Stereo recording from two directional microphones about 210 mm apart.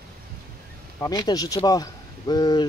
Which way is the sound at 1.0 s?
20° left (ahead or behind).